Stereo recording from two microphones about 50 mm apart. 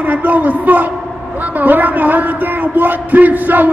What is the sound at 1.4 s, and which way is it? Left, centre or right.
A man's voice, right.